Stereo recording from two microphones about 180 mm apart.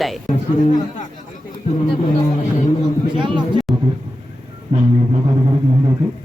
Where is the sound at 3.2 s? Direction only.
25° right (ahead or behind).